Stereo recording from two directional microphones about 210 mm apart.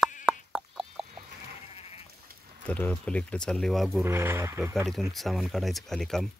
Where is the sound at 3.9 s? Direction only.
10° right (ahead or behind).